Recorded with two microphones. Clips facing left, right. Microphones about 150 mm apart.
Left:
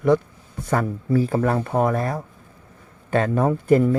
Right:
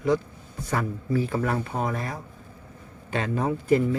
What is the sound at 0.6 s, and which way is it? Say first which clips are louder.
A man's voice: left 5 dB; 45° left (ahead or behind).